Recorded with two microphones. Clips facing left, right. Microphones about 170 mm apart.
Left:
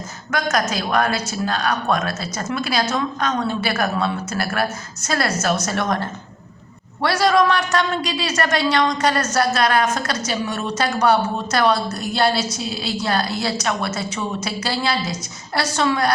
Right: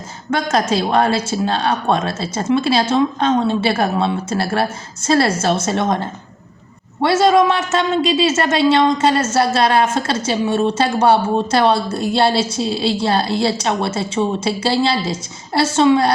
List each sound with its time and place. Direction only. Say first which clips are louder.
0.3 s a woman's voice: right 4 dB; 30° right (ahead or behind)